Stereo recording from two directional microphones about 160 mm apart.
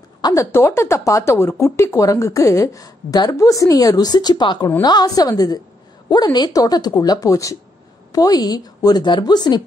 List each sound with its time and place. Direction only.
0.2 s speech: 20° left (ahead or behind)